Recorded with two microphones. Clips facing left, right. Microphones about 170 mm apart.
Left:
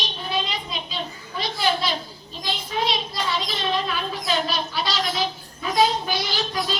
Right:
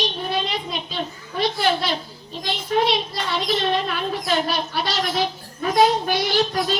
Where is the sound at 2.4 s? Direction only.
60° right (ahead or behind).